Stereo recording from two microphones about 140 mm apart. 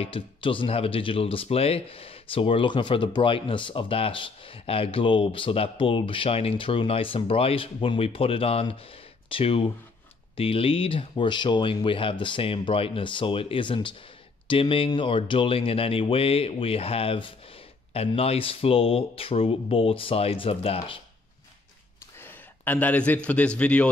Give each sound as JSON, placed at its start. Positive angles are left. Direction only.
{"t": 0.0, "sound": "speech", "side_deg": 40}
{"t": 22.1, "sound": "speech", "side_deg": 15}